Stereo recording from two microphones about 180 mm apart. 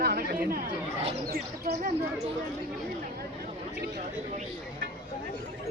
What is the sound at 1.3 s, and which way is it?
Speech, 55° right (ahead or behind).